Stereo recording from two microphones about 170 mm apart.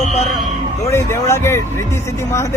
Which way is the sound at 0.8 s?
15° left (ahead or behind).